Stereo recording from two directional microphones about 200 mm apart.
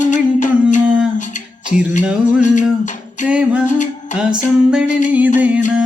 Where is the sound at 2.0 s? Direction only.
5° right (ahead or behind).